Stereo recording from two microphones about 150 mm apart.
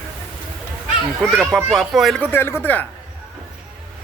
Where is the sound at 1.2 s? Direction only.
5° left (ahead or behind).